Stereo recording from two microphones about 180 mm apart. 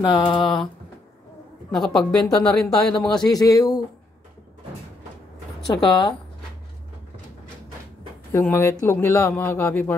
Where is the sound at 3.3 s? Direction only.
20° left (ahead or behind).